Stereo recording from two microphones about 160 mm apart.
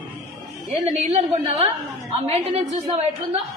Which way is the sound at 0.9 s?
40° right (ahead or behind).